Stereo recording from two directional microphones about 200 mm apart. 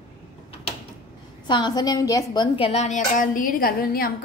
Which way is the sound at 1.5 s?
20° left (ahead or behind).